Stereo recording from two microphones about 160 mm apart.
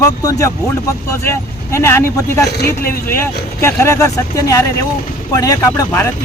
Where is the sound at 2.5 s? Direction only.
80° left.